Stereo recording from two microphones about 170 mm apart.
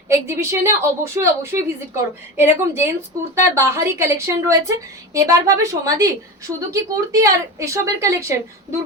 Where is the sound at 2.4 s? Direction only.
15° right (ahead or behind).